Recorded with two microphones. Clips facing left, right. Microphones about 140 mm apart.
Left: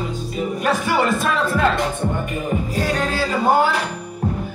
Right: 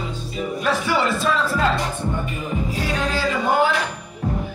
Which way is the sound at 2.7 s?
40° left (ahead or behind).